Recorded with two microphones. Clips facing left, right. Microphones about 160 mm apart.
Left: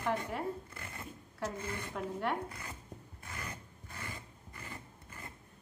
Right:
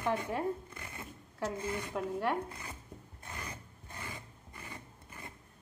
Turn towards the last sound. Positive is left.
turn(degrees=-20)  # may be behind; listen again after turning